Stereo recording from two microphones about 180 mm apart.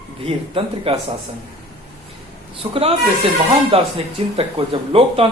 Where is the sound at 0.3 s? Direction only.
30° right (ahead or behind).